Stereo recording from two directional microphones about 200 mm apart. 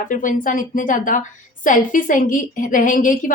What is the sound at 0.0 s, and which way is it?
A woman's voice, 40° left (ahead or behind).